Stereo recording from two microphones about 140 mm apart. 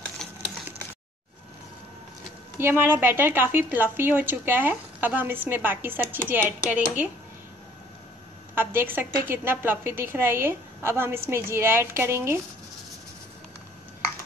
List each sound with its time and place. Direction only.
0.2 s a sound: 5° left (ahead or behind)
2.6 s a woman's voice: 15° right (ahead or behind)
8.5 s a woman's voice: 15° right (ahead or behind)